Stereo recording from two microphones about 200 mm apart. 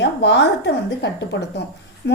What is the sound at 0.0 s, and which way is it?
A woman's voice, 60° left (ahead or behind).